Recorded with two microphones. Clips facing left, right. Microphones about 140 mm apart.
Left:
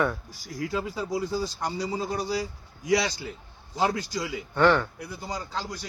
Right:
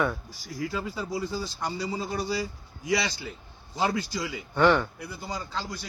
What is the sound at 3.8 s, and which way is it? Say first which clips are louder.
Speech: left 1 dB; 10° left (ahead or behind).